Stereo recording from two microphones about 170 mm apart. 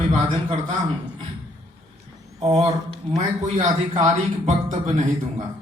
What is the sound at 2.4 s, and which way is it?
Speech, 35° right (ahead or behind).